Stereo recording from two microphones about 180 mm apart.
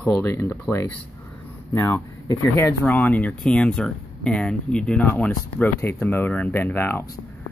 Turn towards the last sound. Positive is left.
turn(degrees=10)  # may be behind; listen again after turning